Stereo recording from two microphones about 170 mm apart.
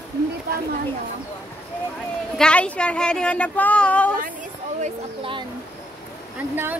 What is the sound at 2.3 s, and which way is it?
Speech, 5° left (ahead or behind).